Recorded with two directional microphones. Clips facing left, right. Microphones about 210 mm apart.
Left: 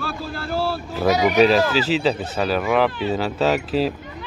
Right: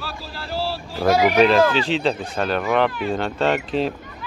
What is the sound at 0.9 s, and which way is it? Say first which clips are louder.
Speech: even; 5° left (ahead or behind).